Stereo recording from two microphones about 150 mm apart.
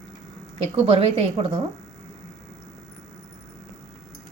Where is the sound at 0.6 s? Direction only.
40° right (ahead or behind).